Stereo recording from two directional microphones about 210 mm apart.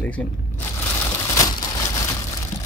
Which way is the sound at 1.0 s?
15° left (ahead or behind).